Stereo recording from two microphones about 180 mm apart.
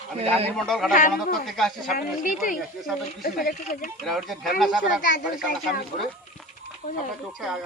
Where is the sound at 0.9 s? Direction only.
50° left (ahead or behind).